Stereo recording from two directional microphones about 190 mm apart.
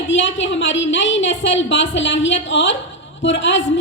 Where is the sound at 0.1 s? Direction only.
75° left (ahead or behind).